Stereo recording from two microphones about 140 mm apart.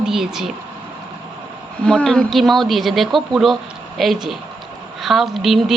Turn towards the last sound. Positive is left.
turn(degrees=0)  # may be behind; listen again after turning